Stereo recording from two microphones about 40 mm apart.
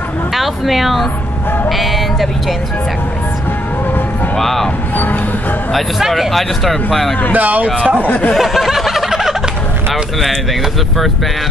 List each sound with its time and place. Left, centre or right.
0.4 s speech: centre
4.4 s speech: centre
5.7 s speech: centre
7.3 s speech: right
7.6 s speech: right
8.0 s speech: left
8.4 s snicker: centre